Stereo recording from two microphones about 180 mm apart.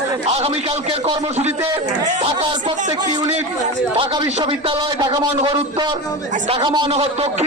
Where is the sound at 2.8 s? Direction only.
40° right (ahead or behind).